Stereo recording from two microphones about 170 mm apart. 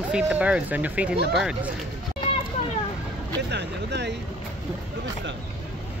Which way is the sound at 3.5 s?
90° right.